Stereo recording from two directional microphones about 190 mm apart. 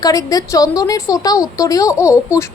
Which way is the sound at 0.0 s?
20° left (ahead or behind).